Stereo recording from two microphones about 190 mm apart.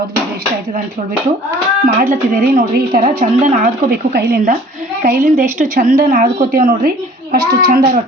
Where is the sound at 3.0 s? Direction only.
40° right (ahead or behind).